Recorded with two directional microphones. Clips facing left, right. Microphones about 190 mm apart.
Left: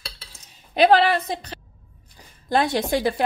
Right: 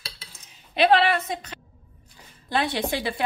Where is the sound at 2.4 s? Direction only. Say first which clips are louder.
Left 4 dB; 45° left (ahead or behind).